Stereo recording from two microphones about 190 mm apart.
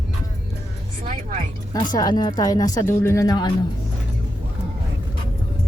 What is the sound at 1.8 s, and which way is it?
Speech, 20° left (ahead or behind).